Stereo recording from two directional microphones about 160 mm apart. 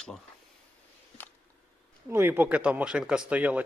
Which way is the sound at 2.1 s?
15° right (ahead or behind).